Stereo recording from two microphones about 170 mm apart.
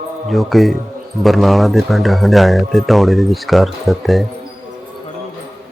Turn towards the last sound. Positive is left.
turn(degrees=0)  # may be behind; listen again after turning